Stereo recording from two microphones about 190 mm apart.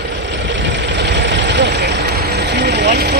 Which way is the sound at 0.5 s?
70° right (ahead or behind).